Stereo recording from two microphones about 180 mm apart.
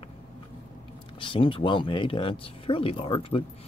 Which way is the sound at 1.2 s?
30° left (ahead or behind).